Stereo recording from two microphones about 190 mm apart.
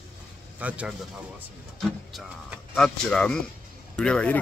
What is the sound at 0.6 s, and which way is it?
Speech, 5° right (ahead or behind).